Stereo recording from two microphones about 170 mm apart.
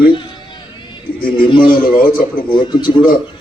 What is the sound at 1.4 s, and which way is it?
Speech, 30° left (ahead or behind).